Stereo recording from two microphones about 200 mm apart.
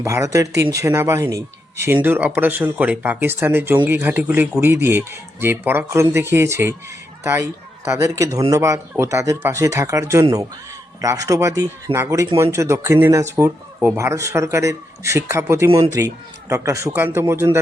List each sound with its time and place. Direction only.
0.0 s speech: 15° right (ahead or behind)